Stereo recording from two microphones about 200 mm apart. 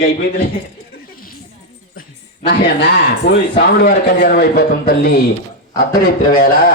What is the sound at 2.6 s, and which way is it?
Speech, 60° left (ahead or behind).